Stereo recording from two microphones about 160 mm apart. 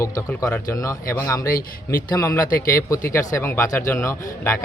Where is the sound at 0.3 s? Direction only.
20° left (ahead or behind).